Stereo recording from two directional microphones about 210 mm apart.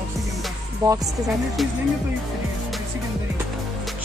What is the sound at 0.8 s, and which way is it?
Speech, 15° right (ahead or behind).